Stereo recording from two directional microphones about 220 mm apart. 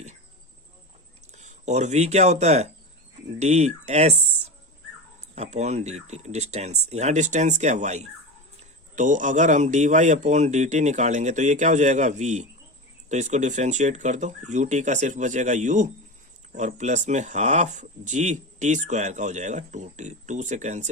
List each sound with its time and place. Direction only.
1.3 s speech: 30° right (ahead or behind)
5.3 s speech: 30° right (ahead or behind)